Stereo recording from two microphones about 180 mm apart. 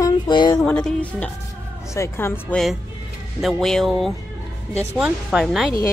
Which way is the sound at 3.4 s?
Centre (ahead or behind).